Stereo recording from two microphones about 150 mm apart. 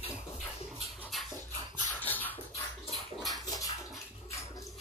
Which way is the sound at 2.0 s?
10° left (ahead or behind).